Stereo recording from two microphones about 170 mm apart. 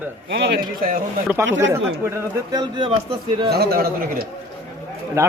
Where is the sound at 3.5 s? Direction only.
65° right (ahead or behind).